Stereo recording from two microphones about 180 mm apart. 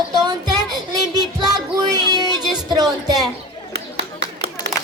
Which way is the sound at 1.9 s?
20° right (ahead or behind).